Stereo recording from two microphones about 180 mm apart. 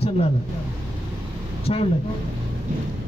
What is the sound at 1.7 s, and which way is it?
Speech, 40° left (ahead or behind).